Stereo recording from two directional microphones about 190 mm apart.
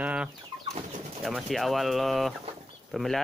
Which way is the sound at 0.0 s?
5° right (ahead or behind).